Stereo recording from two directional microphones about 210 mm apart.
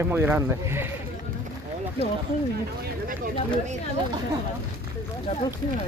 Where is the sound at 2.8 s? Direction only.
40° right (ahead or behind).